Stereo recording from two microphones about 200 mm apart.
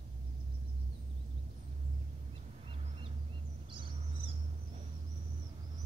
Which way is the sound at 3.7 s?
25° right (ahead or behind).